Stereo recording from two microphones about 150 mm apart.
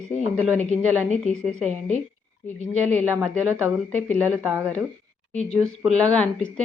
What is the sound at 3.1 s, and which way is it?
Speech, 15° right (ahead or behind).